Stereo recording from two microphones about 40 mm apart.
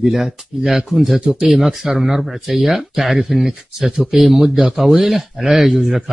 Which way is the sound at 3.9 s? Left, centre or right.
Right.